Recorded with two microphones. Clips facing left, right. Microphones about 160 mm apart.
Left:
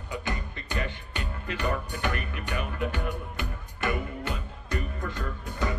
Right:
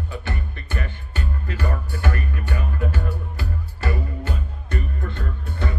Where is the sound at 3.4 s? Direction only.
35° right (ahead or behind).